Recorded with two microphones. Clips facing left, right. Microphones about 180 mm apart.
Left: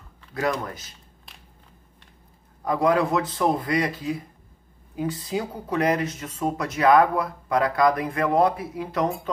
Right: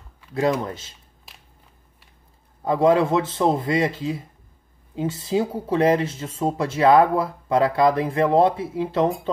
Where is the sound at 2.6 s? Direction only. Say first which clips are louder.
Right 4 dB; 25° right (ahead or behind).